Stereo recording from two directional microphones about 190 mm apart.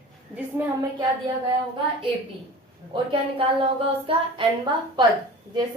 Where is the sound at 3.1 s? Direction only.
30° right (ahead or behind).